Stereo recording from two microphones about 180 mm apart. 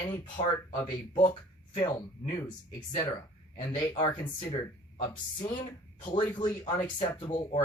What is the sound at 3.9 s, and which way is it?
Speech, 20° left (ahead or behind).